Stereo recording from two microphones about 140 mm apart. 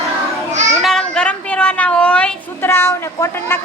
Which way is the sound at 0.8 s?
Centre (ahead or behind).